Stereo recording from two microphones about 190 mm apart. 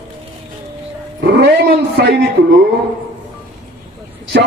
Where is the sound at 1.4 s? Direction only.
60° right (ahead or behind).